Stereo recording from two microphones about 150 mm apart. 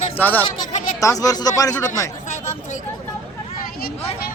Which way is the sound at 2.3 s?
55° left (ahead or behind).